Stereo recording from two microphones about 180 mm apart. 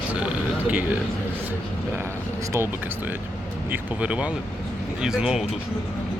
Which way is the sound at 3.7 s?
5° right (ahead or behind).